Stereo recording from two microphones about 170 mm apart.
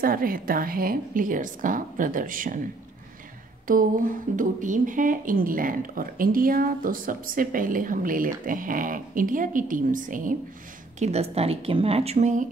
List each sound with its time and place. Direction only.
0.0 s a woman's voice: 55° right (ahead or behind)
3.6 s a woman's voice: 55° right (ahead or behind)
11.0 s speech: 40° right (ahead or behind)